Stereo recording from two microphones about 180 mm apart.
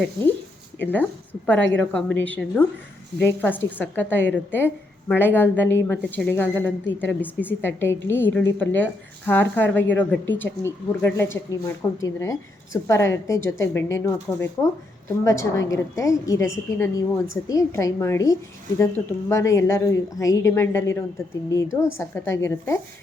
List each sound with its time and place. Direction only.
0.8 s speech: 10° left (ahead or behind)